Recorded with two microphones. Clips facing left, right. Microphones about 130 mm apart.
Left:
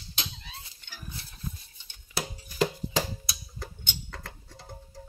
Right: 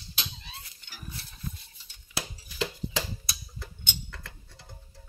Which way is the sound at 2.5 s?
45° left (ahead or behind).